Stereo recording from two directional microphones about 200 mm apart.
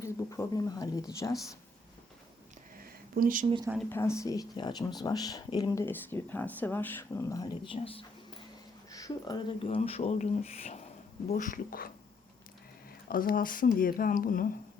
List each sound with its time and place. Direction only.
0.0 s speech: 15° left (ahead or behind)
3.2 s speech: 45° right (ahead or behind)
3.8 s speech: 10° left (ahead or behind); by 11.9 s 45° left (ahead or behind)
13.1 s speech: 45° left (ahead or behind)